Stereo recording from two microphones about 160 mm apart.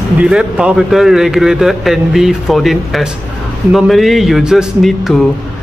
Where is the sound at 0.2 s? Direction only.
5° right (ahead or behind).